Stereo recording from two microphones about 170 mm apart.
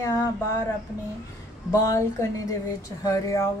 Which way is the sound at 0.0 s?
20° left (ahead or behind).